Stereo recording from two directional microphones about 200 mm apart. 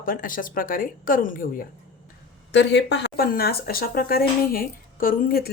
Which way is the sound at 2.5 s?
60° left (ahead or behind).